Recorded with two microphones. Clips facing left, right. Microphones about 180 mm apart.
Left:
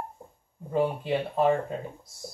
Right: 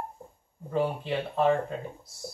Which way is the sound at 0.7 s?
10° left (ahead or behind).